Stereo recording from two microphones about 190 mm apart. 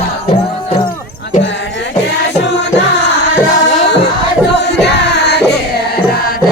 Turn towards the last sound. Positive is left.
turn(degrees=60)  # may be behind; listen again after turning